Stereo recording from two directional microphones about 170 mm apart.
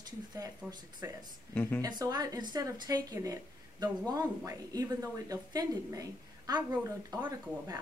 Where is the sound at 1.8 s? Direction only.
25° right (ahead or behind).